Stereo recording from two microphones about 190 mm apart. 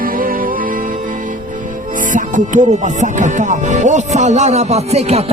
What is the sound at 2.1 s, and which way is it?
Speech, 40° right (ahead or behind).